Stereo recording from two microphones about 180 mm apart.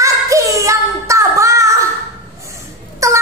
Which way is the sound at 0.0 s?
15° right (ahead or behind).